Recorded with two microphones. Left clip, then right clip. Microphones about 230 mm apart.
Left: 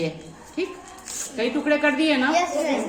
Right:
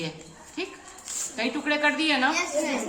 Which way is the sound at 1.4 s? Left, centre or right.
Right.